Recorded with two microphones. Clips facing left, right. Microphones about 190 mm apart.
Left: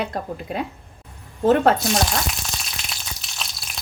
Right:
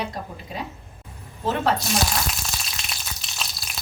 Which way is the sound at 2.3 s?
Centre (ahead or behind).